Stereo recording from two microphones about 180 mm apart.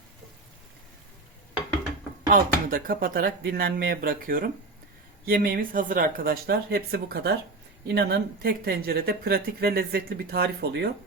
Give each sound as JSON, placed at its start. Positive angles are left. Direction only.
{"t": 2.3, "sound": "speech", "side_deg": -50}